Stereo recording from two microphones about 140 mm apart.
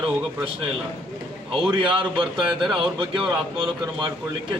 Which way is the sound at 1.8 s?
35° right (ahead or behind).